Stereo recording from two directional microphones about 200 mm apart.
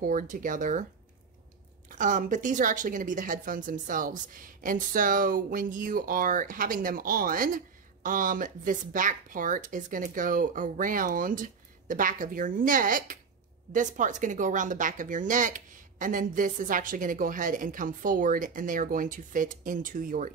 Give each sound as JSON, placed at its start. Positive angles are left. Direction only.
{"t": 0.0, "sound": "speech", "side_deg": -40}
{"t": 1.9, "sound": "a woman's voice", "side_deg": -40}